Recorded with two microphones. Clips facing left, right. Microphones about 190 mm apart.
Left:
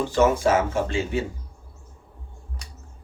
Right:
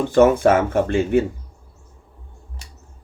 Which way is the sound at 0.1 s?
55° right (ahead or behind).